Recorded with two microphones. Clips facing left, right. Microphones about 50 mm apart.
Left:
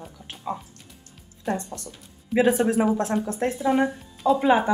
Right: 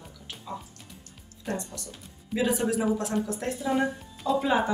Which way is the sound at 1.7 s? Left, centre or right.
Left.